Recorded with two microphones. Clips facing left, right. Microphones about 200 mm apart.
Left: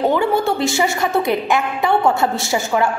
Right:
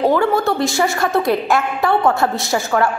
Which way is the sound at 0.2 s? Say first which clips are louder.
Right 1 dB; 25° left (ahead or behind).